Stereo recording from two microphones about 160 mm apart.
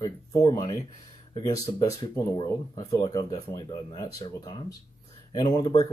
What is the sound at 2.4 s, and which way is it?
Speech, 30° left (ahead or behind).